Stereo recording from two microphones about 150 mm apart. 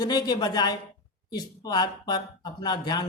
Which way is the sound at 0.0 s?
25° left (ahead or behind).